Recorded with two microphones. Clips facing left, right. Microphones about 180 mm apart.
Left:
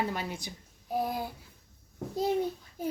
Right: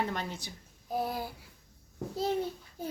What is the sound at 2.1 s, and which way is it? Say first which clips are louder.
Babbling: left 2 dB; 15° left (ahead or behind).